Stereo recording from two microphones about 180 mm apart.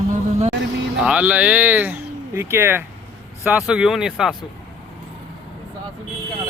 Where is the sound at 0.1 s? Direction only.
40° right (ahead or behind).